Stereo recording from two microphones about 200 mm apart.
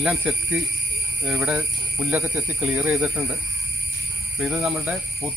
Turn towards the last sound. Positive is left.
turn(degrees=-5)  # may be behind; listen again after turning